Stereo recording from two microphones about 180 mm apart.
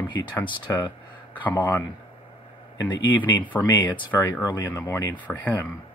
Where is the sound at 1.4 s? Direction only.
10° left (ahead or behind).